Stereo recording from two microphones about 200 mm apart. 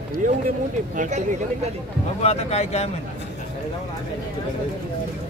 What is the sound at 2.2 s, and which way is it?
Speech, 30° left (ahead or behind).